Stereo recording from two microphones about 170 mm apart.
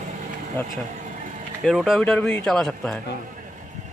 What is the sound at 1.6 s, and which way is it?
Speech, centre (ahead or behind).